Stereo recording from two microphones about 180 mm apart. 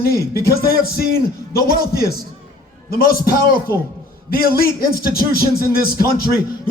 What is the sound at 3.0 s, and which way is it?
A man's voice, 55° left (ahead or behind).